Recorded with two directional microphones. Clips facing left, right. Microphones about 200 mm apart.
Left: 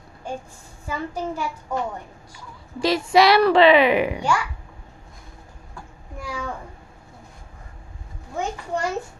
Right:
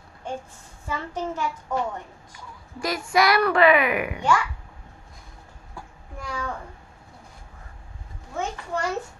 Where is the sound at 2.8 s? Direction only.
30° left (ahead or behind).